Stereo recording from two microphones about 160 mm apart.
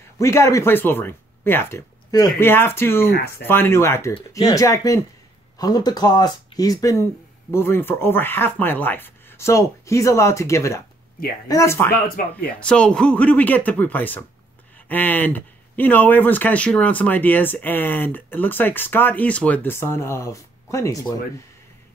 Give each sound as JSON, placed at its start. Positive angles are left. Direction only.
{"t": 0.2, "sound": "speech", "side_deg": 20}
{"t": 3.1, "sound": "speech", "side_deg": 70}
{"t": 3.4, "sound": "speech", "side_deg": 15}
{"t": 12.2, "sound": "speech", "side_deg": 60}
{"t": 12.5, "sound": "speech", "side_deg": 5}